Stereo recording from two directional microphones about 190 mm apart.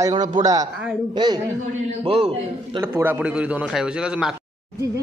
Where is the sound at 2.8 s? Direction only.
10° right (ahead or behind).